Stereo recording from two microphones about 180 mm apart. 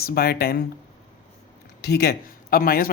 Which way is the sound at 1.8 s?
60° left (ahead or behind).